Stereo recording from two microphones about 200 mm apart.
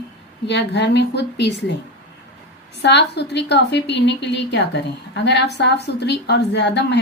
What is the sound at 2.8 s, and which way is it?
A woman's voice, 60° left (ahead or behind).